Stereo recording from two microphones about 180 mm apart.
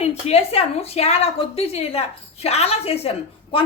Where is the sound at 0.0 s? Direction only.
35° left (ahead or behind).